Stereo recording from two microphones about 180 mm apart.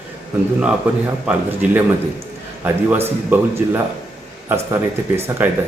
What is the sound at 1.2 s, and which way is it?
Speech, 10° right (ahead or behind).